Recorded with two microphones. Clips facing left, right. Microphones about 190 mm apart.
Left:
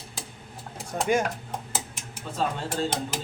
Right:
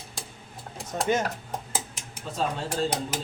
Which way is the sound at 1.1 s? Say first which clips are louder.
Left 2 dB; 10° left (ahead or behind).